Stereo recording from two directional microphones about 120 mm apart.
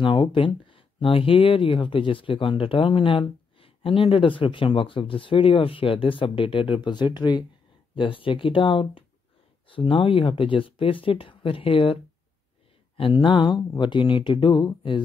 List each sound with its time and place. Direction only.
0.0 s speech: 45° left (ahead or behind)